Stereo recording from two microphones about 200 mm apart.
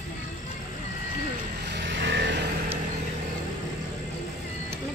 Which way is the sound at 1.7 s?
65° right (ahead or behind).